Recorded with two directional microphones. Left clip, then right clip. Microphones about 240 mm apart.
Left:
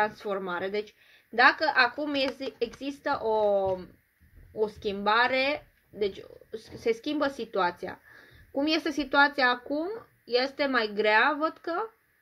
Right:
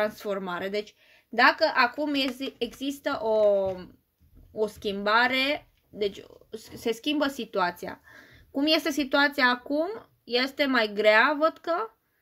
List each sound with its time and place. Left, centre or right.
0.0 s speech: right